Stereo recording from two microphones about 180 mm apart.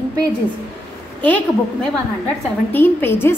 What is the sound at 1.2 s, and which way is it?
A woman's voice, 10° left (ahead or behind).